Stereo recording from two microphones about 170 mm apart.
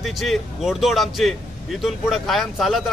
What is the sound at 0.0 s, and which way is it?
Speech, centre (ahead or behind).